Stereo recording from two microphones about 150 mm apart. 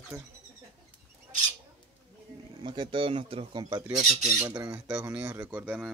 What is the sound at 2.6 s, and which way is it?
Speech, 30° right (ahead or behind).